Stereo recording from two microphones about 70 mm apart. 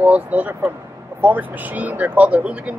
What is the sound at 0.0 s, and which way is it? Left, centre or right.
Speech, right.